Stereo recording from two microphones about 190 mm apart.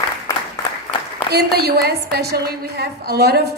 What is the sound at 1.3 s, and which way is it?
A woman's voice, 60° right (ahead or behind).